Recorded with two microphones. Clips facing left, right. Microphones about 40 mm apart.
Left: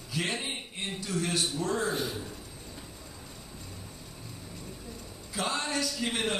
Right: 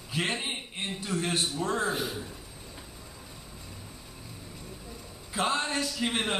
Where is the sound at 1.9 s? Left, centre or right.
Centre.